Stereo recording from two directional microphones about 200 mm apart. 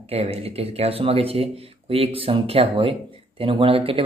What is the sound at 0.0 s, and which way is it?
Speech, 30° right (ahead or behind).